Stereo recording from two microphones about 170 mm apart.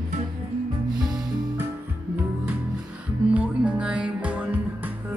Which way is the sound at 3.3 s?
5° right (ahead or behind).